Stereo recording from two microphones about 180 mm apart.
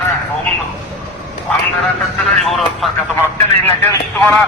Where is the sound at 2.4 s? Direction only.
Centre (ahead or behind).